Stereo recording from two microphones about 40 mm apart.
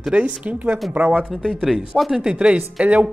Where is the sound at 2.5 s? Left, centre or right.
Right.